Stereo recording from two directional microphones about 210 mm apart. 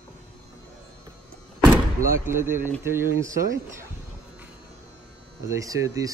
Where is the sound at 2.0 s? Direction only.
15° right (ahead or behind).